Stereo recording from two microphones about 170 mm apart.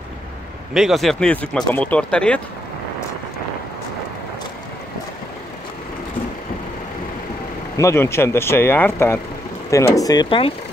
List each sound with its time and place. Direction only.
0.7 s speech: centre (ahead or behind)
7.7 s speech: 15° left (ahead or behind)